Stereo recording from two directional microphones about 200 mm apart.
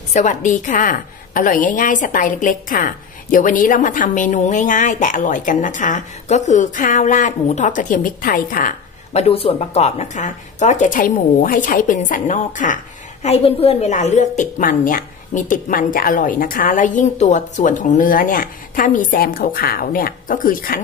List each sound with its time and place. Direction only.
0.1 s speech: 40° left (ahead or behind)
9.3 s speech: 30° left (ahead or behind); by 20.8 s 45° left (ahead or behind)